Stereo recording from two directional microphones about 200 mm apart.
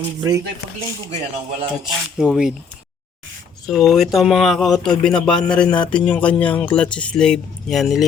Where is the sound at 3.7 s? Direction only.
Centre (ahead or behind).